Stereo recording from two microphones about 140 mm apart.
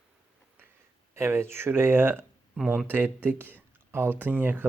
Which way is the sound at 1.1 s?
20° right (ahead or behind).